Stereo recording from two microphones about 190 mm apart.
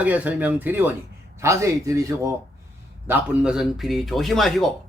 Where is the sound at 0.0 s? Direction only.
10° right (ahead or behind).